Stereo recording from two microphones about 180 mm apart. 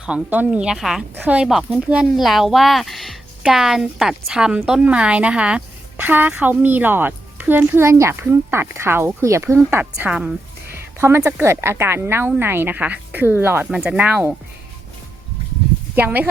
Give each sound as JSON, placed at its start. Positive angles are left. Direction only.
{"t": 0.0, "sound": "speech", "side_deg": -5}
{"t": 16.0, "sound": "speech", "side_deg": -10}